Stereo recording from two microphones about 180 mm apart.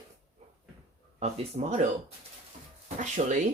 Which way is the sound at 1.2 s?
40° right (ahead or behind).